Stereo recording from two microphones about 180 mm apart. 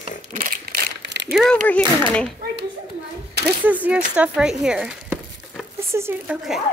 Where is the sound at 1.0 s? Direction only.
75° right (ahead or behind).